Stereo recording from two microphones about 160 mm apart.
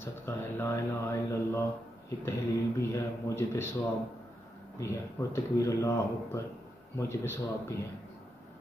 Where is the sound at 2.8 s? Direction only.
15° left (ahead or behind).